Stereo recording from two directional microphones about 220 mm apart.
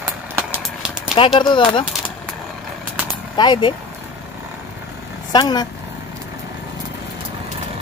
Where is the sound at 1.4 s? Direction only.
20° left (ahead or behind).